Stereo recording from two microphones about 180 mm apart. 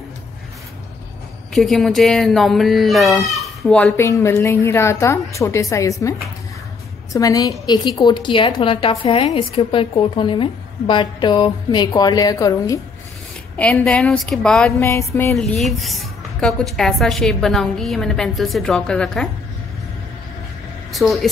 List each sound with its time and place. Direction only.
1.5 s a woman's voice: centre (ahead or behind); by 12.8 s 20° left (ahead or behind)
13.6 s speech: 5° left (ahead or behind)
14.8 s a sound: 15° left (ahead or behind)
15.3 s speech: centre (ahead or behind)
20.9 s speech: centre (ahead or behind)